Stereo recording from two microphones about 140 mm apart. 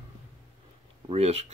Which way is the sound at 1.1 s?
45° right (ahead or behind).